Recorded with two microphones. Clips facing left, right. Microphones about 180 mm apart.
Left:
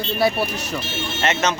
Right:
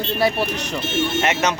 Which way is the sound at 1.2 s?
15° right (ahead or behind).